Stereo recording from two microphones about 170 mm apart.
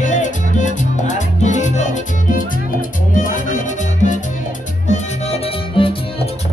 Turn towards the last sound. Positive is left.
turn(degrees=30)  # may be behind; listen again after turning